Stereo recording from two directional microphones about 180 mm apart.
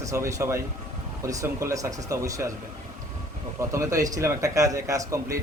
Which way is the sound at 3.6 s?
15° right (ahead or behind).